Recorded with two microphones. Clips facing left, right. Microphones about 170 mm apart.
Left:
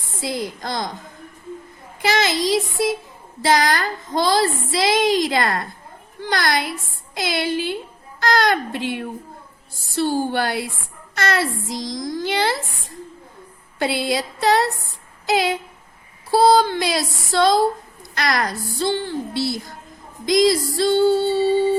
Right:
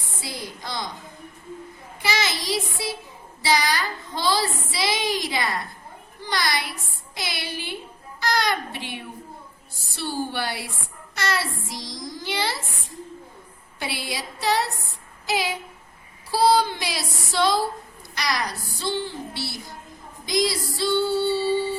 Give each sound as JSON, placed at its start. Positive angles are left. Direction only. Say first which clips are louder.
{"t": 0.3, "sound": "speech", "louder": "left 8 dB", "side_deg": 50}
{"t": 2.0, "sound": "a child's voice", "louder": "left 7 dB", "side_deg": 50}
{"t": 13.7, "sound": "a sound", "louder": "left 10 dB", "side_deg": 55}
{"t": 16.3, "sound": "speech", "louder": "left 5 dB", "side_deg": 50}